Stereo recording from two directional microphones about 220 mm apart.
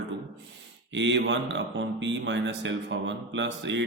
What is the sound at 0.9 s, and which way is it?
A man's voice, 55° right (ahead or behind).